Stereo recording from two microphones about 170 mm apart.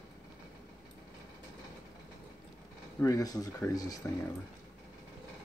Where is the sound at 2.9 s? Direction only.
20° left (ahead or behind).